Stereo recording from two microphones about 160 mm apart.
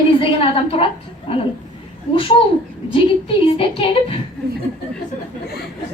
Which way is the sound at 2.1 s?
35° left (ahead or behind).